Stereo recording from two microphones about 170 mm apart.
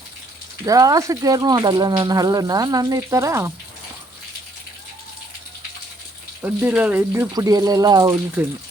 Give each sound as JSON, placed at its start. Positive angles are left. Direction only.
{"t": 0.6, "sound": "speech", "side_deg": -20}
{"t": 6.4, "sound": "speech", "side_deg": -10}
{"t": 8.4, "sound": "speech", "side_deg": -10}